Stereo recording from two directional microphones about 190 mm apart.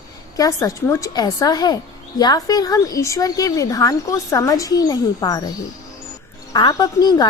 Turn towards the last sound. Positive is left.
turn(degrees=20)  # may be behind; listen again after turning